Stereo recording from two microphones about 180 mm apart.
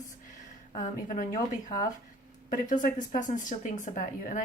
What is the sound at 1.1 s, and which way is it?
Speech, 45° left (ahead or behind).